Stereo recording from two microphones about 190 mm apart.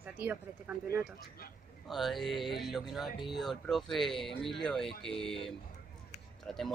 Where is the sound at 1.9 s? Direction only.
Centre (ahead or behind).